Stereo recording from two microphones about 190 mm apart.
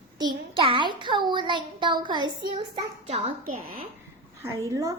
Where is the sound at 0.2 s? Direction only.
25° right (ahead or behind).